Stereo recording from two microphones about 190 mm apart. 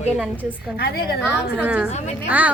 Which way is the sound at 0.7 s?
55° left (ahead or behind).